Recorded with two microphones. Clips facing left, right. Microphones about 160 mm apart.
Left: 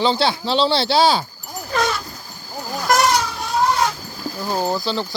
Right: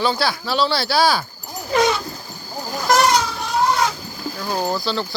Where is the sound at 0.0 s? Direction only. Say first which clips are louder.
Left 2 dB; 25° left (ahead or behind).